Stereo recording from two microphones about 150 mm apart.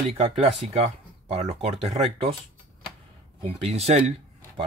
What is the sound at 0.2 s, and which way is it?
Speech, 40° right (ahead or behind).